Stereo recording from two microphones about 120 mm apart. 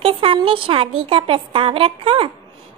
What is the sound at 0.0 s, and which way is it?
Speech, 50° right (ahead or behind).